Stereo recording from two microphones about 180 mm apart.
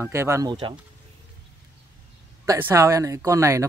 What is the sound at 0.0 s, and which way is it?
Speech, 15° right (ahead or behind).